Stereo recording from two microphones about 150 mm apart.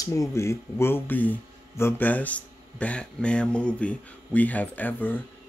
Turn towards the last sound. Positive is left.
turn(degrees=10)  # may be behind; listen again after turning